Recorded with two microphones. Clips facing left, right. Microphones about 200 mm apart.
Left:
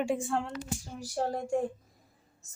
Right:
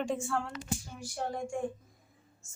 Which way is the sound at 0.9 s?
40° left (ahead or behind).